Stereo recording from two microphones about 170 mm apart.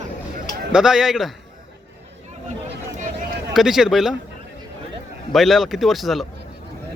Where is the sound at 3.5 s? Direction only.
Centre (ahead or behind).